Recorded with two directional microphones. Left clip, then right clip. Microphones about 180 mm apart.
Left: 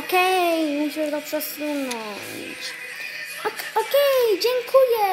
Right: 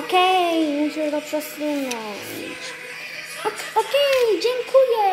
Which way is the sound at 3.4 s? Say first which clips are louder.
Right 2 dB; 50° left (ahead or behind).